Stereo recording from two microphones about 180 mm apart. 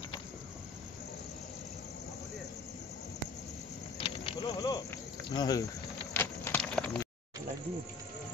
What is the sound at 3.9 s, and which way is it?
Snake, 30° left (ahead or behind).